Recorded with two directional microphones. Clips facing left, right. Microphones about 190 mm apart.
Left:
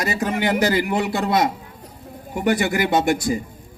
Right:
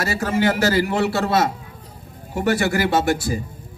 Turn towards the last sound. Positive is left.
turn(degrees=20)  # may be behind; listen again after turning